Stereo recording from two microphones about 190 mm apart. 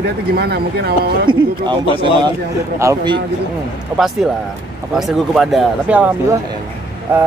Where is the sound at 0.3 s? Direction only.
55° right (ahead or behind).